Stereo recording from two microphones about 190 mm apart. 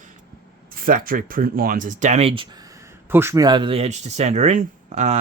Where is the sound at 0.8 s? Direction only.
50° right (ahead or behind); by 2.5 s 30° right (ahead or behind).